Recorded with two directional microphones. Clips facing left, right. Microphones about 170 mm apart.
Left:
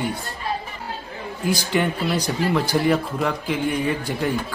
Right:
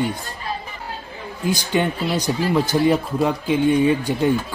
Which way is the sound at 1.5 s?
20° right (ahead or behind).